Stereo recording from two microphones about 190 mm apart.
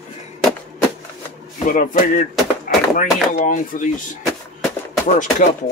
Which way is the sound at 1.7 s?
45° left (ahead or behind).